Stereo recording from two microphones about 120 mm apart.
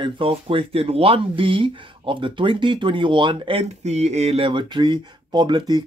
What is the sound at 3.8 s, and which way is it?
Speech, 65° right (ahead or behind).